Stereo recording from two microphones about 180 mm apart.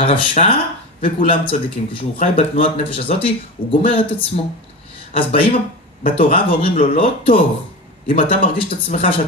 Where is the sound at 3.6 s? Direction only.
50° left (ahead or behind).